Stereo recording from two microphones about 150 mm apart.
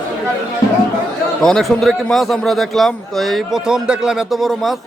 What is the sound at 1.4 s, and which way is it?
A man's voice, centre (ahead or behind).